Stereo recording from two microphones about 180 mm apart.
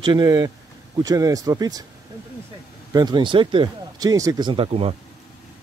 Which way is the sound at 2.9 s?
20° right (ahead or behind).